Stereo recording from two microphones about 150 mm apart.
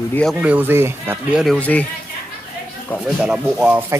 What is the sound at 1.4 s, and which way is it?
Speech, 5° left (ahead or behind).